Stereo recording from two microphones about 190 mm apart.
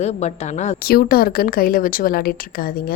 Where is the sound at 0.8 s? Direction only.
55° left (ahead or behind).